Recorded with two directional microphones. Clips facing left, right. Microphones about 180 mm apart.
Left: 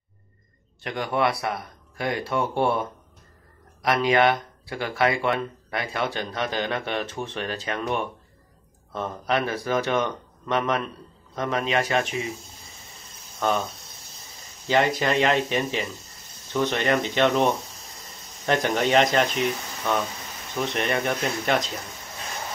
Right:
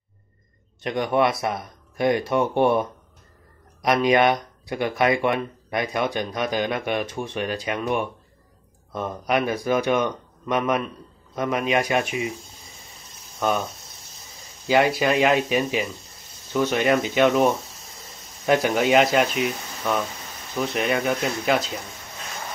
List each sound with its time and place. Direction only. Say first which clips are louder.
0.8 s speech: right 3 dB; 20° right (ahead or behind)
13.4 s speech: right 1 dB; 10° right (ahead or behind)
14.7 s speech: right 3 dB; 10° right (ahead or behind)